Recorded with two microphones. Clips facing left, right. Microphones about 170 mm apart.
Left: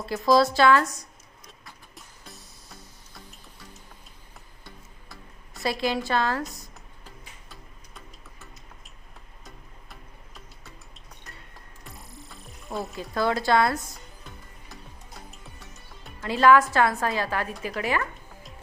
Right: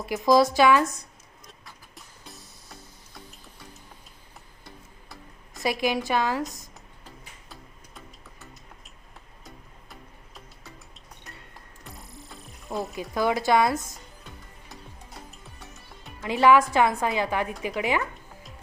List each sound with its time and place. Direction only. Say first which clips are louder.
0.0 s a woman's voice: right 1 dB; 15° right (ahead or behind)
1.5 s music: even; centre (ahead or behind)
5.6 s a woman's voice: right 1 dB; 15° right (ahead or behind)
11.9 s music: right 1 dB; centre (ahead or behind)
13.0 s a woman's voice: even; 15° right (ahead or behind)
16.2 s a woman's voice: even; 15° right (ahead or behind)